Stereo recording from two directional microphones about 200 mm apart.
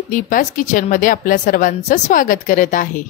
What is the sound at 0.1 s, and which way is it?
A woman's voice, 40° left (ahead or behind).